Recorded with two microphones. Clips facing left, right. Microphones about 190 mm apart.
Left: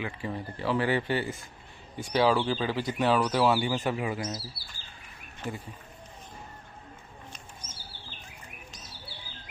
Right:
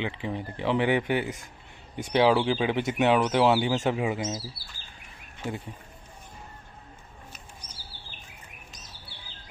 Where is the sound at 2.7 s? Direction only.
25° right (ahead or behind).